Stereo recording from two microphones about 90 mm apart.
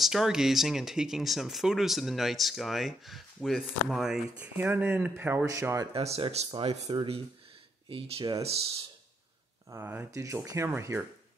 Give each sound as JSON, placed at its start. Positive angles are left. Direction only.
{"t": 0.0, "sound": "speech", "side_deg": -5}
{"t": 4.4, "sound": "speech", "side_deg": -20}
{"t": 5.4, "sound": "speech", "side_deg": -35}
{"t": 5.9, "sound": "speech", "side_deg": -80}
{"t": 9.7, "sound": "speech", "side_deg": -25}
{"t": 10.1, "sound": "speech", "side_deg": -35}